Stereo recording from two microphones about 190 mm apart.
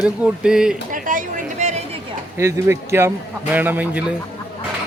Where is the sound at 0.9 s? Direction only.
45° right (ahead or behind).